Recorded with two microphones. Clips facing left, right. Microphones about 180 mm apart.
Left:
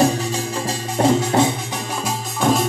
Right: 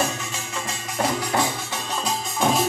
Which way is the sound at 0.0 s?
35° left (ahead or behind).